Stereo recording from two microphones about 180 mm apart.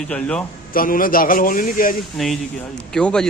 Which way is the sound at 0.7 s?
50° left (ahead or behind).